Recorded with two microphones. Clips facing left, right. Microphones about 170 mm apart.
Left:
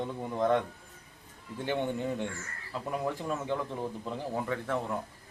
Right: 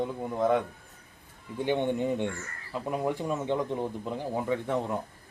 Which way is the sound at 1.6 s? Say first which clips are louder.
Right 4 dB; 15° right (ahead or behind).